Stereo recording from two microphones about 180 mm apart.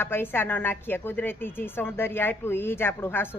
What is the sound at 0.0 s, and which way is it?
A woman's voice, 10° left (ahead or behind).